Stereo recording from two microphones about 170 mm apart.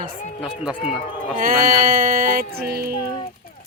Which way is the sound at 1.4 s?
55° right (ahead or behind).